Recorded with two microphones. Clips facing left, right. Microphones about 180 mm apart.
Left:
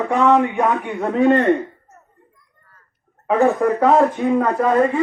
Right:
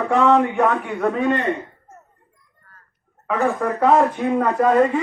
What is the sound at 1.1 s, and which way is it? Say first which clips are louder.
Speech: left 10 dB; 40° left (ahead or behind).